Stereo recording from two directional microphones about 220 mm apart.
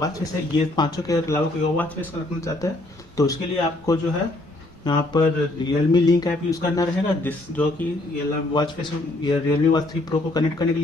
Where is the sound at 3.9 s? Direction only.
15° left (ahead or behind).